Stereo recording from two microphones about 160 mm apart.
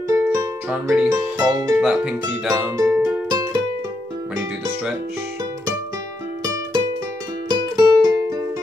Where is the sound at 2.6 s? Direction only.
20° right (ahead or behind).